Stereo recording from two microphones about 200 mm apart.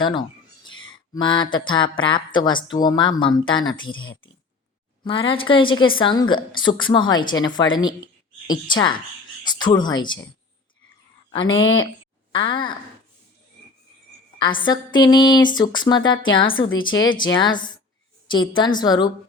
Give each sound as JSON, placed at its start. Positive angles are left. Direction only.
{"t": 0.0, "sound": "a sound", "side_deg": 20}
{"t": 1.1, "sound": "a woman's voice", "side_deg": 25}
{"t": 5.0, "sound": "a woman's voice", "side_deg": 25}
{"t": 11.3, "sound": "a woman's voice", "side_deg": 25}
{"t": 14.3, "sound": "a woman's voice", "side_deg": 25}